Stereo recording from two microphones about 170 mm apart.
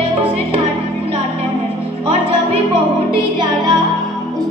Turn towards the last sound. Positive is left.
turn(degrees=-25)  # may be behind; listen again after turning